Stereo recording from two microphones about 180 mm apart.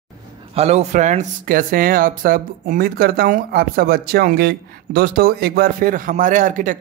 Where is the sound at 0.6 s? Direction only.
35° right (ahead or behind).